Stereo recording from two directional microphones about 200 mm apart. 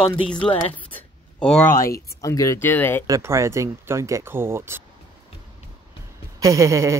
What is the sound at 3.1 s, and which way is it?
Speech, 15° right (ahead or behind).